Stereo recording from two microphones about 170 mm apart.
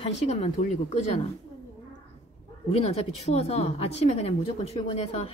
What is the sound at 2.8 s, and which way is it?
Speech, 40° left (ahead or behind).